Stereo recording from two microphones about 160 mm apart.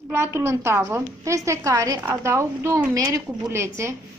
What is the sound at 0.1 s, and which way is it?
A woman's voice, 15° right (ahead or behind).